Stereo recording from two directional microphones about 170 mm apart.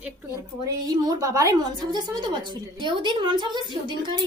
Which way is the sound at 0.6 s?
20° right (ahead or behind).